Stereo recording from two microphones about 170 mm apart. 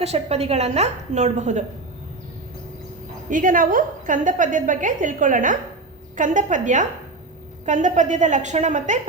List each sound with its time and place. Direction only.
0.0 s a woman's voice: 40° right (ahead or behind)
3.2 s a woman's voice: 50° right (ahead or behind)